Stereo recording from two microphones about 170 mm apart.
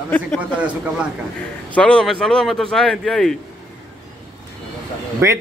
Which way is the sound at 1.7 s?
5° left (ahead or behind).